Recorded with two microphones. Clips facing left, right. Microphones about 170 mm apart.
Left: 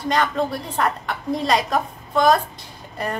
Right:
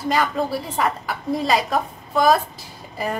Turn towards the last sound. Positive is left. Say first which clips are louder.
# right 1 dB
turn(degrees=0)  # may be behind; listen again after turning